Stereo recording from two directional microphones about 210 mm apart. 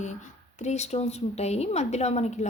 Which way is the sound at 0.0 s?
35° left (ahead or behind).